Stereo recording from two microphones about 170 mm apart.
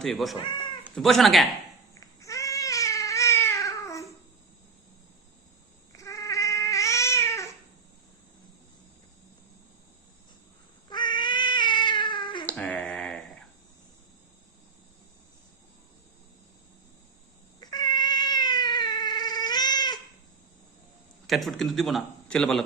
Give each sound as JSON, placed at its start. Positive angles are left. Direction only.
{"t": 0.0, "sound": "speech", "side_deg": 0}
{"t": 2.0, "sound": "cat", "side_deg": 20}
{"t": 5.9, "sound": "cat", "side_deg": 20}
{"t": 10.8, "sound": "cat", "side_deg": 25}
{"t": 12.5, "sound": "finger snapping", "side_deg": 5}
{"t": 17.6, "sound": "cat", "side_deg": 25}
{"t": 21.2, "sound": "a man's voice", "side_deg": 0}